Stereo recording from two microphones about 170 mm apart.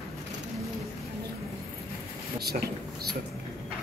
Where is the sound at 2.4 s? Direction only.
65° right (ahead or behind).